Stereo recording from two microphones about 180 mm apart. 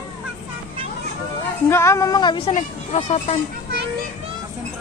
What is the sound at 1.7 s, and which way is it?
Speech, 15° left (ahead or behind).